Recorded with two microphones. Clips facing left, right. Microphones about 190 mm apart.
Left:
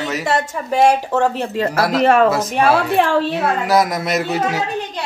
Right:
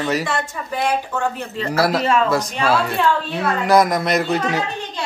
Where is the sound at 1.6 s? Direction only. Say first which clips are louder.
Left 2 dB; 55° left (ahead or behind).